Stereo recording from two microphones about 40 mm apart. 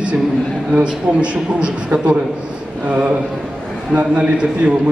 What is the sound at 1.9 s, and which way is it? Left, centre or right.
A man's voice, right.